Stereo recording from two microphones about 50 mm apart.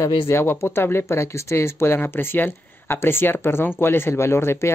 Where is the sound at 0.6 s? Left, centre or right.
Left.